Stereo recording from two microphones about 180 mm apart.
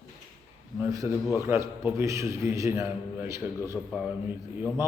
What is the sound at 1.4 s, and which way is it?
A man's voice, 15° right (ahead or behind).